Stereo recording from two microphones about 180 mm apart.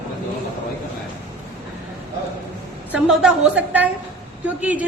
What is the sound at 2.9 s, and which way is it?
A woman's voice, 5° right (ahead or behind).